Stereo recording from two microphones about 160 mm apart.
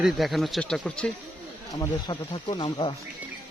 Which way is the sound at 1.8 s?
30° left (ahead or behind).